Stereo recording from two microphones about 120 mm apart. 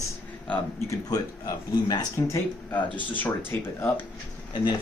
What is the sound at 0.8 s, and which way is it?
Speech, 30° left (ahead or behind).